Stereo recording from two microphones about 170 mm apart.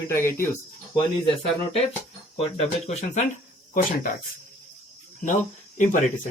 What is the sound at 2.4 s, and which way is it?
Speech, 35° left (ahead or behind).